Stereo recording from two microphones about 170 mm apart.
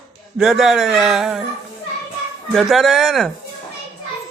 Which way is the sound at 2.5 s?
Centre (ahead or behind).